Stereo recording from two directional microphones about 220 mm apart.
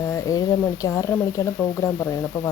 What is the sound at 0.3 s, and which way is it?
Speech, 15° left (ahead or behind).